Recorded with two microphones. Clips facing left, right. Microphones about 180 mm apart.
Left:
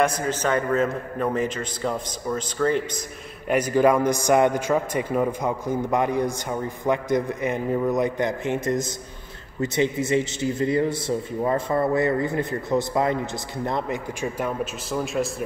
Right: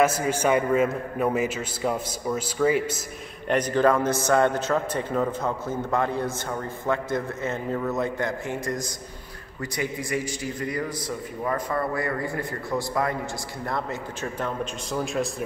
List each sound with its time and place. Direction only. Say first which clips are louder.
0.0 s a man's voice: right 1 dB; 10° right (ahead or behind)
3.4 s a man's voice: left 2 dB; 10° left (ahead or behind)